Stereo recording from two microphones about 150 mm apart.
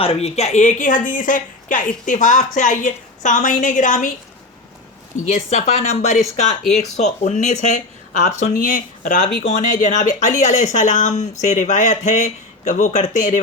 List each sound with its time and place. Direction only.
0.0 s speech: 40° left (ahead or behind); by 4.1 s 55° left (ahead or behind)
5.1 s speech: 50° left (ahead or behind)